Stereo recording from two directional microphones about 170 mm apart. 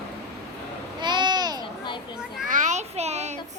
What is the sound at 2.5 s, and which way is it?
Child singing, 50° right (ahead or behind).